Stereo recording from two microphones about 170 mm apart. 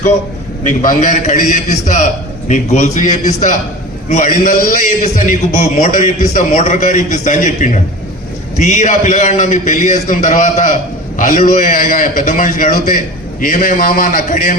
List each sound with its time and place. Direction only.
0.8 s a man's voice: 45° left (ahead or behind)